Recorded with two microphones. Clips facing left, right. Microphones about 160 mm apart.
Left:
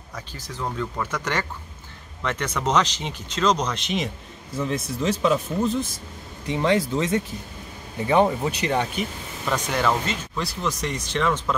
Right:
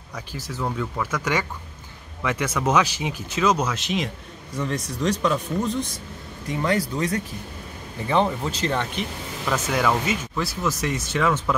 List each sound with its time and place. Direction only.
0.1 s speech: 10° right (ahead or behind)
6.4 s speech: 25° left (ahead or behind)
9.5 s speech: 5° right (ahead or behind)